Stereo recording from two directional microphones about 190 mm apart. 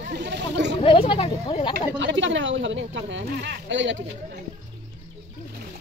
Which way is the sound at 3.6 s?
75° right (ahead or behind).